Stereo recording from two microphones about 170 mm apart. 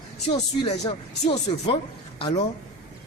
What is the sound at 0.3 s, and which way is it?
Speech, 30° left (ahead or behind).